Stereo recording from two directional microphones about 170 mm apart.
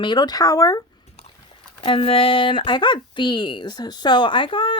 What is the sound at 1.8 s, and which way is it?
Speech, 30° left (ahead or behind).